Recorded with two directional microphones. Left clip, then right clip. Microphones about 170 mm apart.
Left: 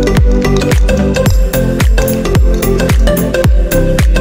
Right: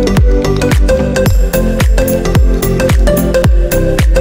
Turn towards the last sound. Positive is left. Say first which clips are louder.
# even
turn(degrees=0)  # may be behind; listen again after turning